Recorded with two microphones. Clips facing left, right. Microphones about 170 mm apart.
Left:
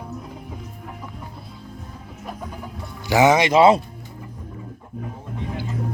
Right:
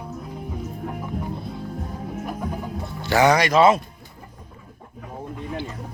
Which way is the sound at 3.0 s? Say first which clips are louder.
Left 2 dB; 15° left (ahead or behind).